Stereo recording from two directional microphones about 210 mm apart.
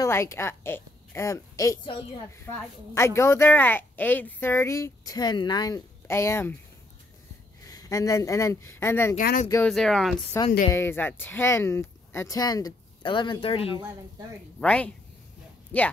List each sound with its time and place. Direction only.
0.0 s a woman's voice: 15° left (ahead or behind)
7.6 s a woman's voice: 15° left (ahead or behind)
9.2 s speech: 45° left (ahead or behind)
9.7 s speech: centre (ahead or behind)
10.3 s a woman's voice: 15° left (ahead or behind)
14.6 s a woman's voice: 5° left (ahead or behind)